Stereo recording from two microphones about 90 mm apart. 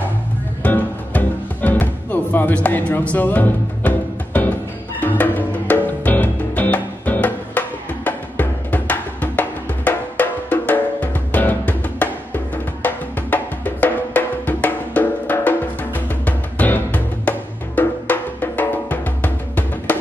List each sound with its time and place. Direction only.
0.6 s music: 20° left (ahead or behind)